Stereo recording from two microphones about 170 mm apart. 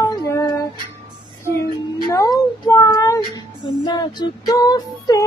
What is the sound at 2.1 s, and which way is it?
Child singing, 20° left (ahead or behind).